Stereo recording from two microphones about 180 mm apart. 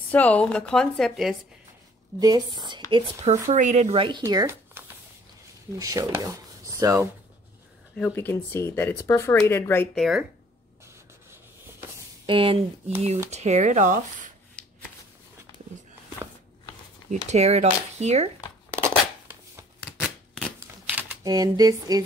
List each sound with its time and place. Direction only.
0.1 s a woman's voice: 10° left (ahead or behind)
2.1 s a woman's voice: 20° right (ahead or behind)
3.4 s speech: 40° right (ahead or behind)
4.2 s speech: 20° right (ahead or behind)
8.0 s speech: 10° left (ahead or behind)
9.9 s a woman's voice: centre (ahead or behind)
12.3 s a woman's voice: 30° right (ahead or behind)
13.3 s speech: 40° right (ahead or behind)
17.1 s speech: 40° right (ahead or behind)
18.8 s shuffling cards: 15° right (ahead or behind)
20.0 s a sound: 5° left (ahead or behind)
20.5 s shuffling cards: 20° right (ahead or behind)